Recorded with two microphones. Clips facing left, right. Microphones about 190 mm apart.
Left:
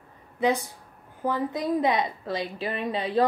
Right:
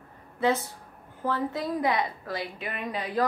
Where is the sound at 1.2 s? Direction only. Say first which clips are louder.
Left 2 dB; 15° left (ahead or behind).